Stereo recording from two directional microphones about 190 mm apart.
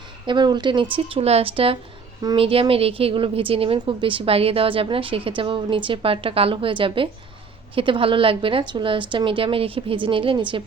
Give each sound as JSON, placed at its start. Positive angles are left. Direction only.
{"t": 0.3, "sound": "a woman's voice", "side_deg": -25}